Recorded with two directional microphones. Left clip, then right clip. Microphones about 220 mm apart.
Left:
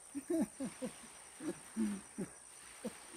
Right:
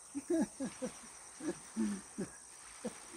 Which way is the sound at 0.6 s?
45° left (ahead or behind).